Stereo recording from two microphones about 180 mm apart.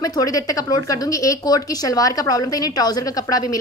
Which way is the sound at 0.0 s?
20° left (ahead or behind).